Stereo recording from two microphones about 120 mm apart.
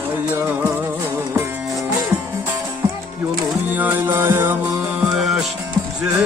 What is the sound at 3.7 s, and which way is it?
Music, 15° right (ahead or behind).